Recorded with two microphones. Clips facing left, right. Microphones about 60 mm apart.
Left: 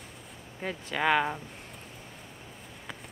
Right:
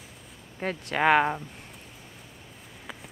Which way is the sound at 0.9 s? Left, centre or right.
Right.